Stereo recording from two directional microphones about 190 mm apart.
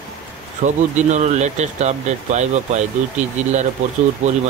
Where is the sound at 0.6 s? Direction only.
40° right (ahead or behind).